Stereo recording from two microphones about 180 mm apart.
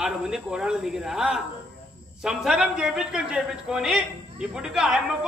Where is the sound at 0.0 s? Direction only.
5° right (ahead or behind).